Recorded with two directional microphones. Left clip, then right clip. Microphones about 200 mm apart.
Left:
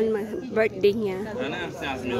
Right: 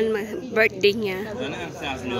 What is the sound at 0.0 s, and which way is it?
Speech, 5° left (ahead or behind).